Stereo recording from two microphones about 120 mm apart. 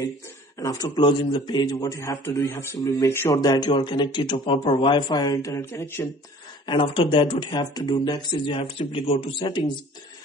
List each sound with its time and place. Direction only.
0.6 s a man's voice: 30° left (ahead or behind)
3.3 s a man's voice: 30° left (ahead or behind)
6.6 s speech: 40° left (ahead or behind)